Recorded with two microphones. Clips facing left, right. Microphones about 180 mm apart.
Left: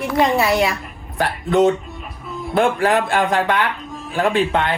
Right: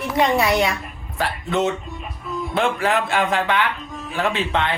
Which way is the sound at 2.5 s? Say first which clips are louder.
Left 4 dB; 40° left (ahead or behind).